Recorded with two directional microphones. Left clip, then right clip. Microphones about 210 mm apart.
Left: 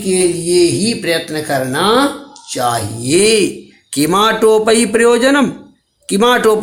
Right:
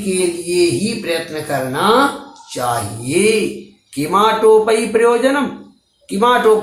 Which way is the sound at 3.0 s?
40° left (ahead or behind).